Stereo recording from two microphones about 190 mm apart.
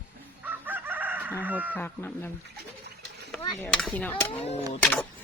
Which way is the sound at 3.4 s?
10° left (ahead or behind).